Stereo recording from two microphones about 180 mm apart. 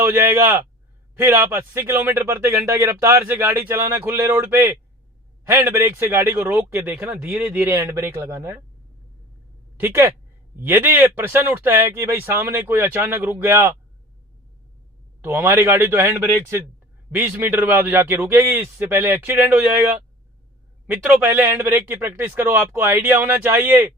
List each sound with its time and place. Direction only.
0.0 s speech: 10° right (ahead or behind)
9.7 s speech: 10° right (ahead or behind)
15.2 s speech: 10° right (ahead or behind)
20.8 s speech: 10° right (ahead or behind)